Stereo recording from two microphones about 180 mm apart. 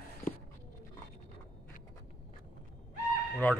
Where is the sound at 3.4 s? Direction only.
10° left (ahead or behind).